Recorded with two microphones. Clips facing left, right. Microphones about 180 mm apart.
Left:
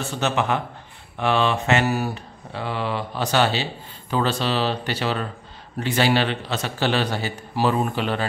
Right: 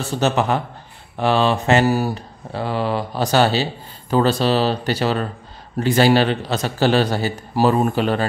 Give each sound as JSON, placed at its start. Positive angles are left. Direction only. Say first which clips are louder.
{"t": 0.0, "sound": "a man's voice", "louder": "right 4 dB", "side_deg": -35}